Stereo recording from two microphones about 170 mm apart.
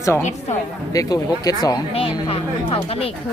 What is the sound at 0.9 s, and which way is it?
Speech, 20° left (ahead or behind).